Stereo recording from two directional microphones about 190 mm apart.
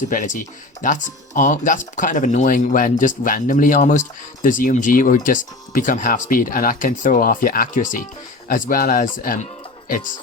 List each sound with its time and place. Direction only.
0.1 s speech: 45° left (ahead or behind)